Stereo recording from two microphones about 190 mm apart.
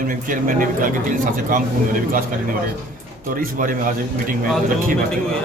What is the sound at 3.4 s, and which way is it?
Speech, 45° right (ahead or behind).